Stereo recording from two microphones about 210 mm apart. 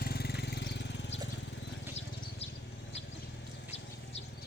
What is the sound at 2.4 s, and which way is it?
Vehicle, 30° left (ahead or behind).